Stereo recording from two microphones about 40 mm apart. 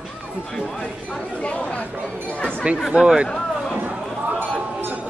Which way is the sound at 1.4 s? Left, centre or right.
Left.